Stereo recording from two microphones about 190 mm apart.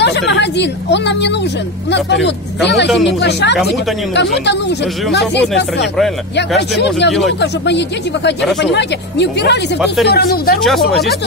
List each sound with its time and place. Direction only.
0.0 s a woman's voice: 65° left (ahead or behind)
6.8 s a woman's voice: 65° left (ahead or behind)
10.6 s speech: centre (ahead or behind)